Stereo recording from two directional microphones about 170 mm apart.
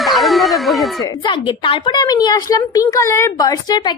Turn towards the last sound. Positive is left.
turn(degrees=20)  # may be behind; listen again after turning